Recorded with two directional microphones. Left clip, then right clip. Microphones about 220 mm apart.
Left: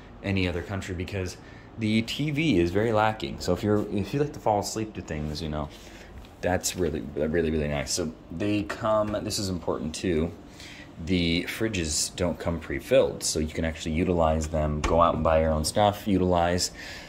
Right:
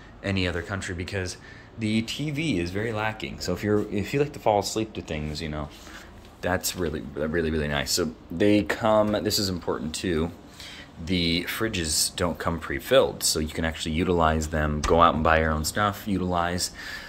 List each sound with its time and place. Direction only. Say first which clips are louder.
0.2 s speech: right 1 dB; centre (ahead or behind)
9.8 s speech: even; centre (ahead or behind)
14.1 s speech: right 1 dB; 40° right (ahead or behind)
15.0 s speech: right 2 dB; 10° right (ahead or behind)
15.6 s speech: left 3 dB; 5° left (ahead or behind)